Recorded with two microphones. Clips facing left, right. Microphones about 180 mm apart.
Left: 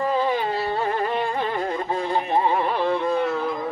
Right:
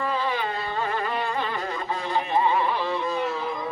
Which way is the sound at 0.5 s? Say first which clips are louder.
Left 4 dB; 30° left (ahead or behind).